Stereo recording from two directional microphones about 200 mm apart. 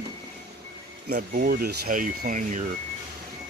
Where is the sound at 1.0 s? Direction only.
50° right (ahead or behind).